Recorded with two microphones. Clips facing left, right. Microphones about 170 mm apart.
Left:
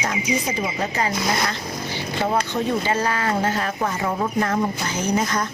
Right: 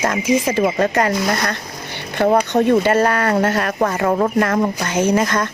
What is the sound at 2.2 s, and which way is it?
Speech, 55° right (ahead or behind).